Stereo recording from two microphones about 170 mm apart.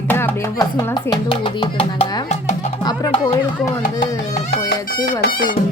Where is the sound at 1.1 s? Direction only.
25° left (ahead or behind).